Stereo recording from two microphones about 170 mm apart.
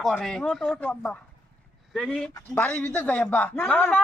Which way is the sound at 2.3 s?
15° left (ahead or behind).